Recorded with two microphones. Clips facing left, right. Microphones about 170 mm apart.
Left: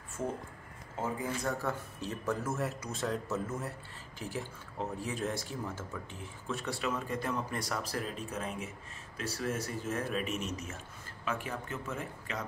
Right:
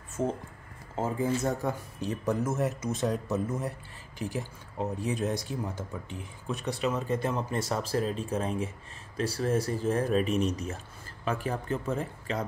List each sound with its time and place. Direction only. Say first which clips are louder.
0.2 s speech: right 6 dB; 20° right (ahead or behind)